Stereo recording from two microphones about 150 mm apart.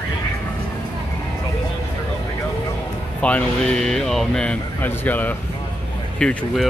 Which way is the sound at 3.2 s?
10° left (ahead or behind).